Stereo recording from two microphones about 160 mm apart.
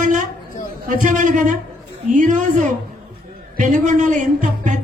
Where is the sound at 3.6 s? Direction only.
50° right (ahead or behind).